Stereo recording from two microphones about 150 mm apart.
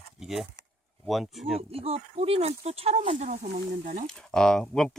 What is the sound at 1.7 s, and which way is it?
Speech, 40° right (ahead or behind).